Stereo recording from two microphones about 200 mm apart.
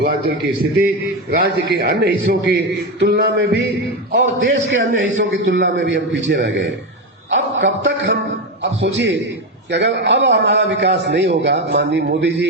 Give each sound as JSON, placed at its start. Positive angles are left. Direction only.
{"t": 0.0, "sound": "a man's voice", "side_deg": -50}